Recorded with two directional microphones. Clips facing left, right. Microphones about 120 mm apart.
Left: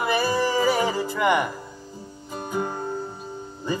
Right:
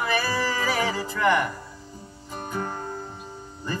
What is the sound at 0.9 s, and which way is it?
Speech, 15° left (ahead or behind).